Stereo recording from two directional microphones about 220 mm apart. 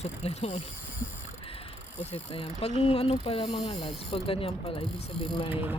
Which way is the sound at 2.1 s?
25° left (ahead or behind).